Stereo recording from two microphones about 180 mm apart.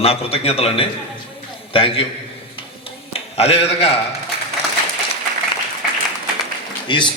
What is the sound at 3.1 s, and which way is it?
Speech, 35° left (ahead or behind).